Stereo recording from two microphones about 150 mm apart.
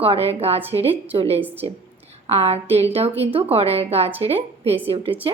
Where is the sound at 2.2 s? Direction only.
45° right (ahead or behind).